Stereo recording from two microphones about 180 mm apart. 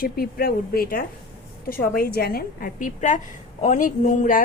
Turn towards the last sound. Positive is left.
turn(degrees=45)  # may be behind; listen again after turning